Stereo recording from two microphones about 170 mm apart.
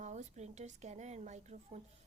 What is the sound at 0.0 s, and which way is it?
A woman's voice, 40° right (ahead or behind).